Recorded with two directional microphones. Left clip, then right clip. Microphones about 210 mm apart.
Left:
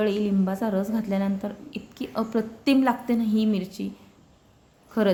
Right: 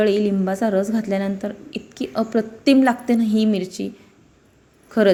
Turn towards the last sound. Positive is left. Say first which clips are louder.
# right 7 dB
turn(degrees=-15)  # may be behind; listen again after turning